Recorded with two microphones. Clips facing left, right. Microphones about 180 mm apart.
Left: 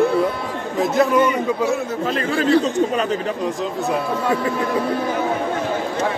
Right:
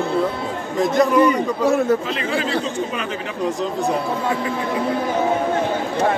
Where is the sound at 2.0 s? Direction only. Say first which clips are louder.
Left 4 dB; 45° left (ahead or behind).